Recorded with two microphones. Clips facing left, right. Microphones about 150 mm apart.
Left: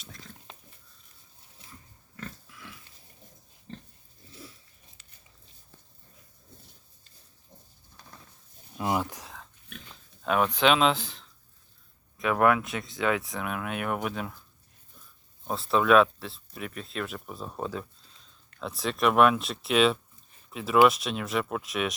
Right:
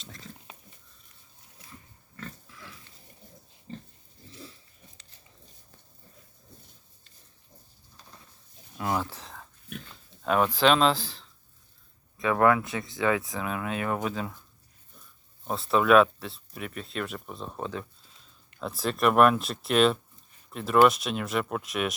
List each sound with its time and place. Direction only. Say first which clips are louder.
0.0 s pig: right 2 dB; centre (ahead or behind)
2.5 s pig: even; centre (ahead or behind)
8.8 s a sound: left 1 dB; 15° left (ahead or behind)
9.9 s speech: right 1 dB; centre (ahead or behind)
15.4 s speech: right 1 dB; centre (ahead or behind)